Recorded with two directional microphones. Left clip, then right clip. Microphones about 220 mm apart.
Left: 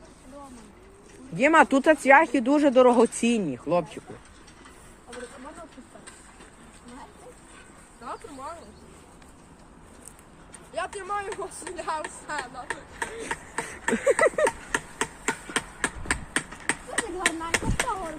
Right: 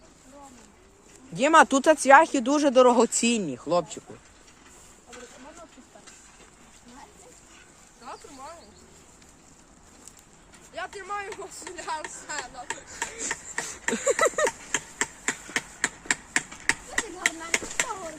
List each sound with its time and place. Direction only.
1.4 s speech: 20° right (ahead or behind)
8.1 s insect: centre (ahead or behind)
10.8 s speech: 20° left (ahead or behind); by 11.7 s 5° left (ahead or behind)
11.8 s speech: 15° right (ahead or behind)
13.0 s a sound: 15° right (ahead or behind)
15.8 s a sound: 15° right (ahead or behind)
16.9 s speech: 10° right (ahead or behind)